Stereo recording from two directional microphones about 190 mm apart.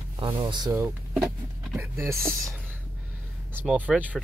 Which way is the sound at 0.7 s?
10° right (ahead or behind).